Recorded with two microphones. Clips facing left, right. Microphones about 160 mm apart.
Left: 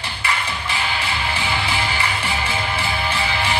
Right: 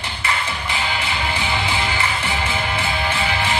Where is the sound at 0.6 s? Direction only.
20° right (ahead or behind).